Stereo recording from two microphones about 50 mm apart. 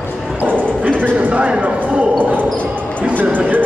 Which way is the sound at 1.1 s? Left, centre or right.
Right.